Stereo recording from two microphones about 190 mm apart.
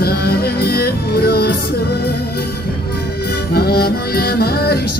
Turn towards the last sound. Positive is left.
turn(degrees=55)  # may be behind; listen again after turning